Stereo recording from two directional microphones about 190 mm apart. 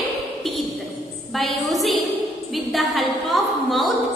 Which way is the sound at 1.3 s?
Centre (ahead or behind).